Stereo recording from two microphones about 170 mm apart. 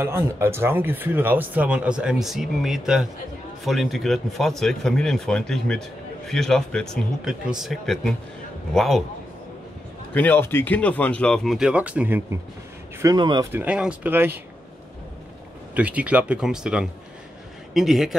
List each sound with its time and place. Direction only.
0.0 s speech: 15° right (ahead or behind)
10.1 s speech: 10° left (ahead or behind); by 12.4 s 10° right (ahead or behind)
13.0 s speech: 25° right (ahead or behind)
13.5 s speech: 10° right (ahead or behind)
15.7 s speech: 10° right (ahead or behind)